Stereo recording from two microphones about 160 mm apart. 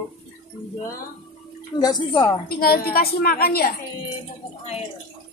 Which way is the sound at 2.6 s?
70° left (ahead or behind).